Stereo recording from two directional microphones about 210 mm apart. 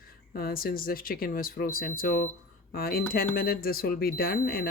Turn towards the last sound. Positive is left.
turn(degrees=45)  # may be behind; listen again after turning